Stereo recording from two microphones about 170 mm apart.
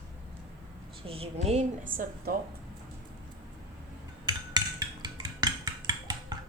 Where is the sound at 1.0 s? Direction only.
35° right (ahead or behind).